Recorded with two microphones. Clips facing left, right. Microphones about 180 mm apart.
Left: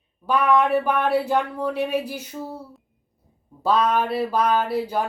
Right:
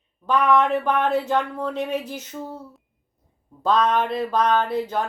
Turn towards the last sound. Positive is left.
turn(degrees=10)  # may be behind; listen again after turning